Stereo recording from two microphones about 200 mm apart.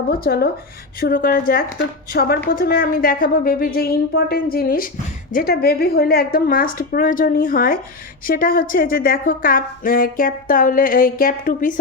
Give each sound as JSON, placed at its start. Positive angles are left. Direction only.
{"t": 0.1, "sound": "a woman's voice", "side_deg": 50}